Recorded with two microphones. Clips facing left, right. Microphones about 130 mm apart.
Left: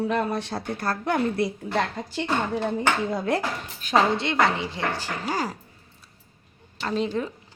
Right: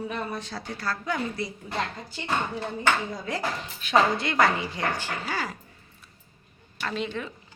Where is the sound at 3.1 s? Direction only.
60° left (ahead or behind).